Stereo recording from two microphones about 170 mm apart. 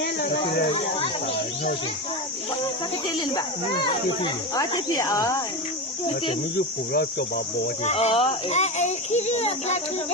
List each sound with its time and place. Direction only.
0.0 s chatter: 90° left
4.2 s speech: 20° left (ahead or behind)
6.9 s speech: 70° left (ahead or behind)
7.9 s a child's voice: 40° left (ahead or behind)